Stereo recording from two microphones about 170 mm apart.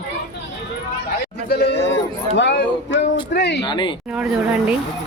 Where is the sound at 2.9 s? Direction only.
90° left.